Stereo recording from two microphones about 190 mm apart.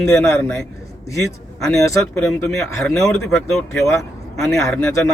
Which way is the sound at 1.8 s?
15° left (ahead or behind).